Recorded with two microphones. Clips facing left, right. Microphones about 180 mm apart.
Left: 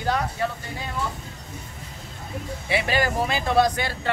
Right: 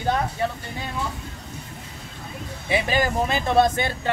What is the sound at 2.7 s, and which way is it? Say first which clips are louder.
Speech: right 1 dB; 20° right (ahead or behind).